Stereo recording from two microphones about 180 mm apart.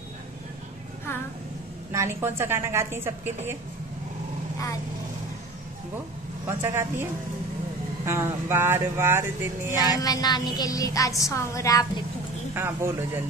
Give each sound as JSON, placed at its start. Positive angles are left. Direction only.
{"t": 1.9, "sound": "speech", "side_deg": -15}
{"t": 6.4, "sound": "speech", "side_deg": -15}
{"t": 10.0, "sound": "a sound", "side_deg": 20}
{"t": 12.5, "sound": "speech", "side_deg": -15}